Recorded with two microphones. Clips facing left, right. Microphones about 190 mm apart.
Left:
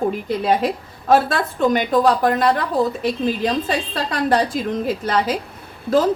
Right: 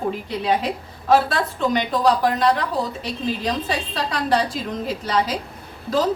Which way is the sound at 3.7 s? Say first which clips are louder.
Left 2 dB; 50° left (ahead or behind).